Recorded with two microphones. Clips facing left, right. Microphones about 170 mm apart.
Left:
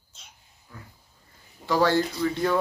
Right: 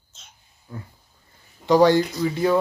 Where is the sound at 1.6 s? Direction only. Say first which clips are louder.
Right 6 dB; 15° right (ahead or behind).